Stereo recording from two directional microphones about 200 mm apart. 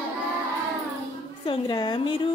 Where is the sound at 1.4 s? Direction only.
20° left (ahead or behind).